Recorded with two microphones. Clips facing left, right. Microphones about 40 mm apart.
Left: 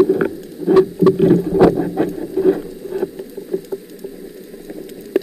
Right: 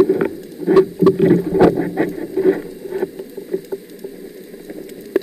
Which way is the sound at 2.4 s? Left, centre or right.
Right.